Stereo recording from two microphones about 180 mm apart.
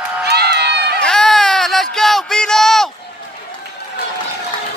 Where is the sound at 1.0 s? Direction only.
5° left (ahead or behind).